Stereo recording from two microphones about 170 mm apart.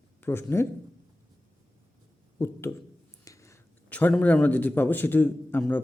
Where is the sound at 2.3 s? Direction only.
15° left (ahead or behind).